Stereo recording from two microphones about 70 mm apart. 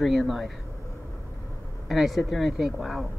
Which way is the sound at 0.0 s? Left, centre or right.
Centre.